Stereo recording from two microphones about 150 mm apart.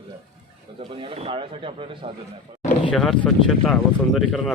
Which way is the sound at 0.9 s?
40° right (ahead or behind).